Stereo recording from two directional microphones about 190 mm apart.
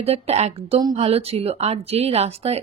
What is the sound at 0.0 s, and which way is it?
Speech, 35° right (ahead or behind).